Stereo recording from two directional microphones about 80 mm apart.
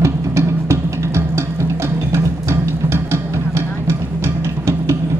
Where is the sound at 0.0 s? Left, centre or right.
Right.